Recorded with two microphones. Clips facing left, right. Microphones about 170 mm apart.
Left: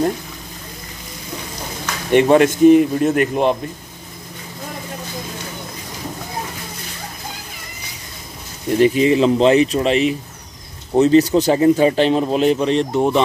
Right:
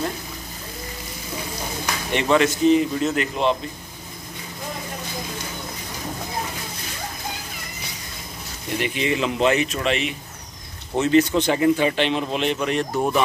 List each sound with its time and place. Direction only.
2.1 s speech: 50° left (ahead or behind)
8.7 s speech: 40° left (ahead or behind)